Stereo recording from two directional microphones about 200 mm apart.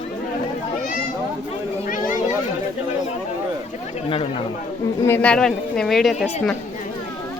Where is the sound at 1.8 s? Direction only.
40° left (ahead or behind).